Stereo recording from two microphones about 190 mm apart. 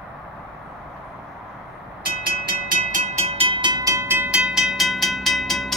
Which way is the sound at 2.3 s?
45° right (ahead or behind).